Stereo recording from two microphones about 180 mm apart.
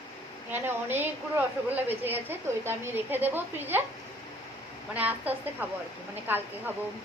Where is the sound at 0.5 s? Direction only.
10° right (ahead or behind).